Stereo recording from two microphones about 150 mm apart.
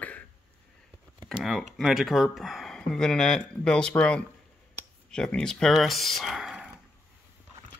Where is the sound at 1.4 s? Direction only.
Centre (ahead or behind).